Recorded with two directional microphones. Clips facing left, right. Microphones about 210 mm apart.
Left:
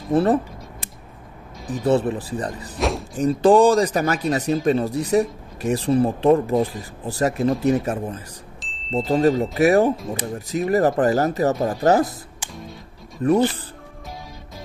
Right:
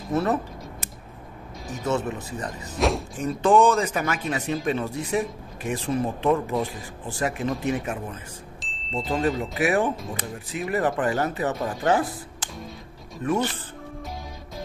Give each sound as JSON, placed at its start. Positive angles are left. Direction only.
{"t": 0.1, "sound": "speech", "side_deg": 30}
{"t": 1.7, "sound": "speech", "side_deg": 35}
{"t": 2.8, "sound": "speech", "side_deg": 0}
{"t": 3.2, "sound": "speech", "side_deg": 35}
{"t": 8.5, "sound": "a sound", "side_deg": 0}
{"t": 8.9, "sound": "speech", "side_deg": 35}
{"t": 13.2, "sound": "speech", "side_deg": 35}